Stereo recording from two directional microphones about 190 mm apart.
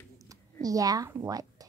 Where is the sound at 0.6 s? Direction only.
20° right (ahead or behind).